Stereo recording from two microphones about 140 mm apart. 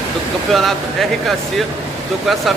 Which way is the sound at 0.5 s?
Centre (ahead or behind).